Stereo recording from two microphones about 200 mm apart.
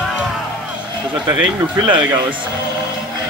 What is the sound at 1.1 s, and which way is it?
Speech, 5° right (ahead or behind).